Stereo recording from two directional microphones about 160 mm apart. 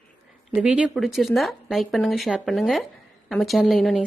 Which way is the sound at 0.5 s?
10° right (ahead or behind).